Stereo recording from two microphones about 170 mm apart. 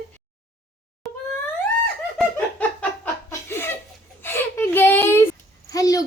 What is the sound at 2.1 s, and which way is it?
Laughter, 10° left (ahead or behind).